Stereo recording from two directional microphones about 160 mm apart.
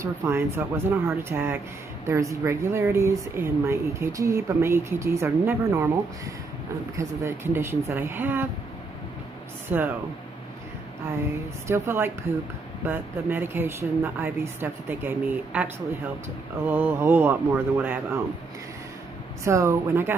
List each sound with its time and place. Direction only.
0.0 s speech: 15° right (ahead or behind)
9.7 s speech: 10° right (ahead or behind)
11.6 s speech: 15° right (ahead or behind)
19.4 s speech: 20° right (ahead or behind)